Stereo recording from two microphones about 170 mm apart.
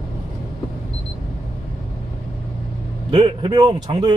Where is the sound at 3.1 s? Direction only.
30° right (ahead or behind).